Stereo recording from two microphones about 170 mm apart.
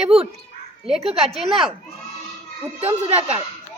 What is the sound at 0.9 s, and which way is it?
Speech, 35° right (ahead or behind).